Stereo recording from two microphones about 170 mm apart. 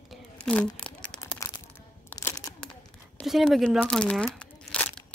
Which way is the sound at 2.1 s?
15° left (ahead or behind).